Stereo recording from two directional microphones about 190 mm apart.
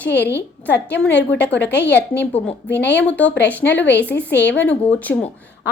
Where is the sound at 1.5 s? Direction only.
65° left (ahead or behind).